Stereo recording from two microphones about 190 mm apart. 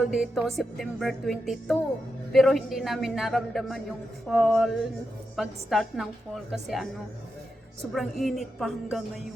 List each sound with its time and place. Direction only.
0.0 s a man's voice: 5° right (ahead or behind)
7.9 s a man's voice: centre (ahead or behind)